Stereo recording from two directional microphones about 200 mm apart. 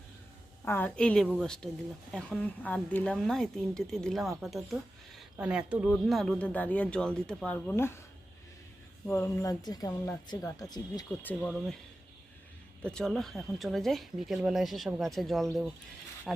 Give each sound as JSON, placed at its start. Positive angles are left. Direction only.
{"t": 0.6, "sound": "speech", "side_deg": 10}
{"t": 9.0, "sound": "speech", "side_deg": 15}
{"t": 11.3, "sound": "speech", "side_deg": 5}
{"t": 12.8, "sound": "speech", "side_deg": 5}